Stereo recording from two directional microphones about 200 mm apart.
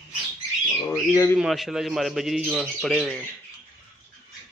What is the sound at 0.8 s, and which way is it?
Speech, 15° left (ahead or behind).